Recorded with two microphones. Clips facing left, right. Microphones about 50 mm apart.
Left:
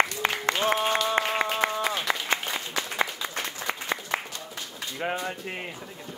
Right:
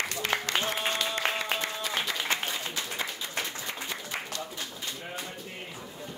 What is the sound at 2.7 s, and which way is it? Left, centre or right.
Applause, left.